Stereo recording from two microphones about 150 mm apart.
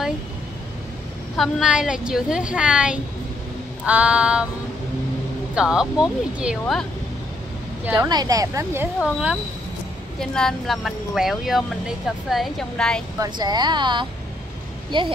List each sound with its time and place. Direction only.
1.3 s a woman's voice: centre (ahead or behind)
3.8 s female singing: 10° right (ahead or behind)
5.5 s a woman's voice: 5° right (ahead or behind)
7.8 s a woman's voice: 15° right (ahead or behind)
8.1 s speech: 25° right (ahead or behind)
9.0 s female singing: 5° right (ahead or behind)
10.3 s a woman's voice: centre (ahead or behind)
13.2 s speech: 30° right (ahead or behind)